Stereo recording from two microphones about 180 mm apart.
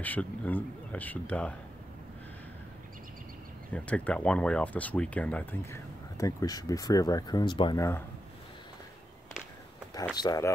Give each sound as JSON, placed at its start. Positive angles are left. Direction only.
{"t": 0.0, "sound": "speech", "side_deg": 10}
{"t": 3.7, "sound": "speech", "side_deg": 5}
{"t": 10.1, "sound": "speech", "side_deg": 20}